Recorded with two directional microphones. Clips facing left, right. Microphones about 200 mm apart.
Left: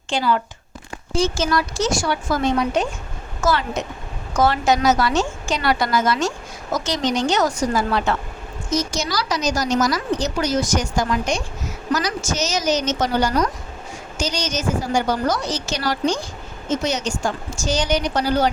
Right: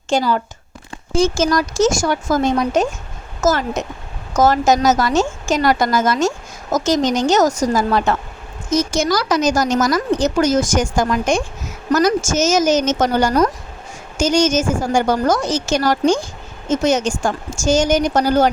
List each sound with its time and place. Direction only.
0.1 s a woman's voice: 40° right (ahead or behind)